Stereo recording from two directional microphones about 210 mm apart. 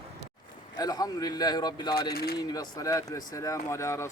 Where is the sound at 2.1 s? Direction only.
50° left (ahead or behind).